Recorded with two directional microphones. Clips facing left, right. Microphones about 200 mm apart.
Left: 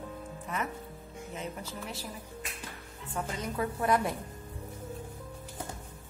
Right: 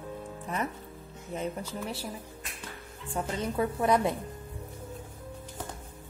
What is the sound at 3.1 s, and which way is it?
Speech, 30° right (ahead or behind).